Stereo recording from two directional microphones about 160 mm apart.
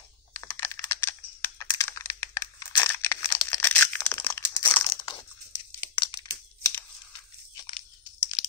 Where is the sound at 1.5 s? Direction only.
20° left (ahead or behind).